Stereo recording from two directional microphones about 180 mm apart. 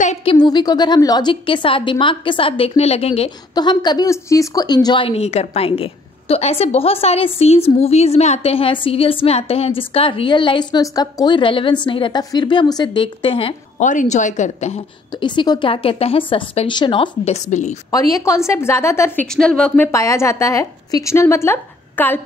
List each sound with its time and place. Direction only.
0.0 s a woman's voice: 35° left (ahead or behind)
3.5 s a woman's voice: 25° left (ahead or behind)
13.7 s speech: 45° left (ahead or behind)
15.1 s a woman's voice: 25° left (ahead or behind)
17.9 s a woman's voice: 20° left (ahead or behind)
19.9 s a woman's voice: 15° left (ahead or behind)